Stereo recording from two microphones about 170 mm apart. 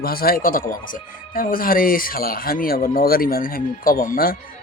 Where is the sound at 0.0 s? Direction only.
60° left (ahead or behind).